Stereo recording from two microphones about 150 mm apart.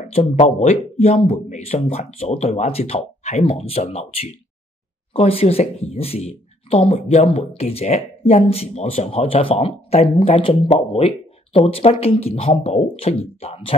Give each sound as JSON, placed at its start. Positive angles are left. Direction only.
{"t": 0.1, "sound": "speech", "side_deg": 40}